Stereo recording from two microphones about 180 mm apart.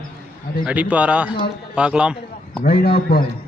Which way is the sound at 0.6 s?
5° right (ahead or behind).